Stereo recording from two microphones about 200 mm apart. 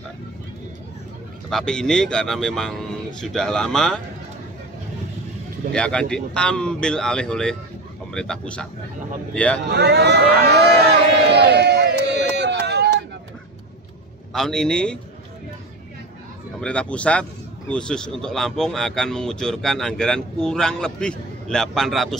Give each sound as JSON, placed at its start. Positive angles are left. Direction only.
{"t": 1.5, "sound": "a man's voice", "side_deg": 5}
{"t": 5.7, "sound": "a man's voice", "side_deg": 5}
{"t": 9.7, "sound": "a sound", "side_deg": -55}
{"t": 14.3, "sound": "a man's voice", "side_deg": 5}
{"t": 16.5, "sound": "a man's voice", "side_deg": 5}